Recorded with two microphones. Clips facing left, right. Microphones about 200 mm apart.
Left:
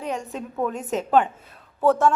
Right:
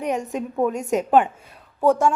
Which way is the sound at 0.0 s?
15° right (ahead or behind).